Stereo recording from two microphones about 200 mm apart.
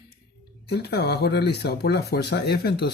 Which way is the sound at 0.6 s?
55° left (ahead or behind).